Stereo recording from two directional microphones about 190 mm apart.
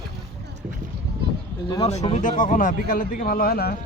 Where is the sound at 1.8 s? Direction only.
35° left (ahead or behind).